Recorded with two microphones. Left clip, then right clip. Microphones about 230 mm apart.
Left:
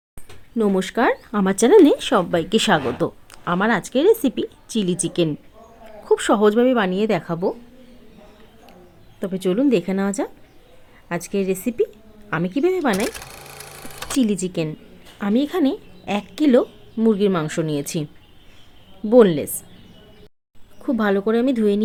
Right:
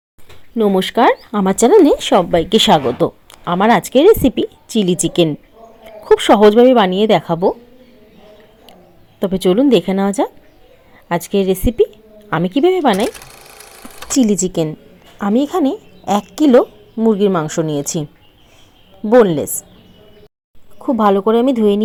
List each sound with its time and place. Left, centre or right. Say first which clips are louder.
0.5 s speech: right 6 dB; centre
9.1 s speech: right 8 dB; centre
13.1 s a sound: right 4 dB; centre
14.2 s a woman's voice: right 7 dB; centre
21.4 s speech: right 6 dB; centre